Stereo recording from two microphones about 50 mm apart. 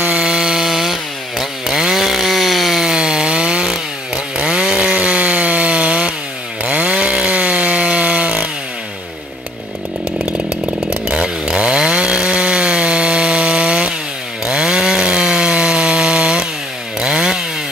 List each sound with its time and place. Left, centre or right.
0.0 s chainsaw: centre
2.8 s chainsaw: centre
10.9 s chainsaw: centre